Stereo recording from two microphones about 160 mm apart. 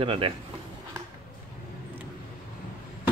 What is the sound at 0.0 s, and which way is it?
Speech, 35° right (ahead or behind).